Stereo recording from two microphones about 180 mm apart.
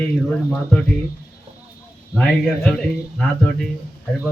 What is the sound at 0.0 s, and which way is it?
Speech, 5° left (ahead or behind).